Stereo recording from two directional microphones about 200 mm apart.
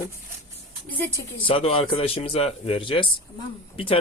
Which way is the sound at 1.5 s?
30° left (ahead or behind).